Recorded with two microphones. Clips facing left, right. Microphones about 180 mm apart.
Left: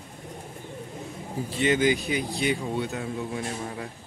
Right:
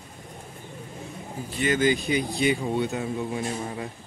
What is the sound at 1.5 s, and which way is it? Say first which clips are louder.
Speech: left 1 dB; 25° left (ahead or behind).